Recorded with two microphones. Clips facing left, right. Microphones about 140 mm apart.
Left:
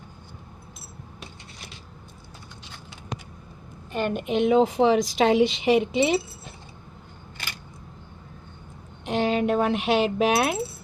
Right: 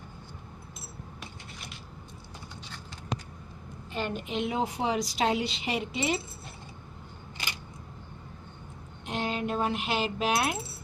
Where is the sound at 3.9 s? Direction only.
60° left (ahead or behind); by 5.7 s 85° left.